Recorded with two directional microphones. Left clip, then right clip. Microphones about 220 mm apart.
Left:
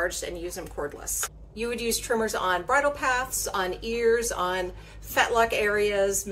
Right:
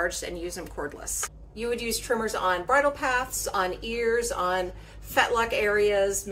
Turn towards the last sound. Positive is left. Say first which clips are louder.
# right 1 dB
turn(degrees=15)  # may be behind; listen again after turning